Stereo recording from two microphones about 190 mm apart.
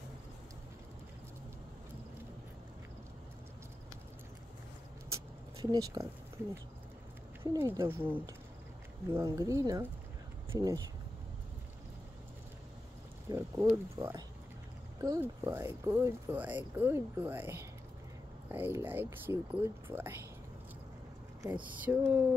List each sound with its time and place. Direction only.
5.1 s a sound: 20° right (ahead or behind)
6.4 s speech: 10° right (ahead or behind)
13.3 s speech: 15° right (ahead or behind)
21.7 s speech: 10° right (ahead or behind)